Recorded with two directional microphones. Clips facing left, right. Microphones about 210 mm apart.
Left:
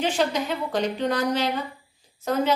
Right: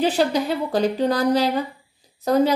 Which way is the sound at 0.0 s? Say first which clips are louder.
Right 4 dB; 35° right (ahead or behind).